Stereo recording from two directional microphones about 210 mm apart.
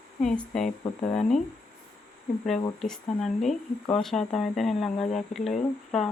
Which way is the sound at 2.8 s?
Centre (ahead or behind).